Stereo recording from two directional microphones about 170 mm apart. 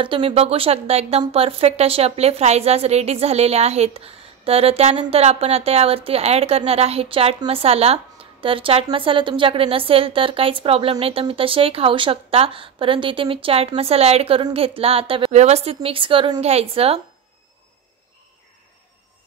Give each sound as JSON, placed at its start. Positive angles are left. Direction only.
{"t": 0.0, "sound": "a woman's voice", "side_deg": -30}